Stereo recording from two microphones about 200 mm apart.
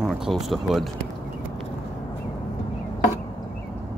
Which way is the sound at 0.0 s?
Centre (ahead or behind).